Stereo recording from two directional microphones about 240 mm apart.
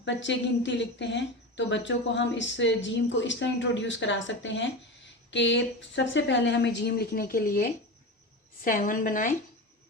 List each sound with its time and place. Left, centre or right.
0.0 s a woman's voice: left